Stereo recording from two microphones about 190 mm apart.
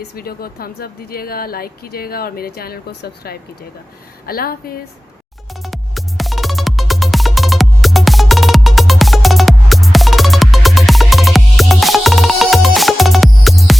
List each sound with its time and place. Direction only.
0.2 s speech: 50° left (ahead or behind)
5.6 s music: centre (ahead or behind)